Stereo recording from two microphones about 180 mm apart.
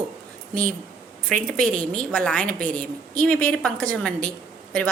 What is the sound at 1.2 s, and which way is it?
A woman's voice, 5° left (ahead or behind).